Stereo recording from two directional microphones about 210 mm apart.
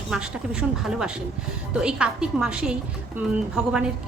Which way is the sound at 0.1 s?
5° right (ahead or behind).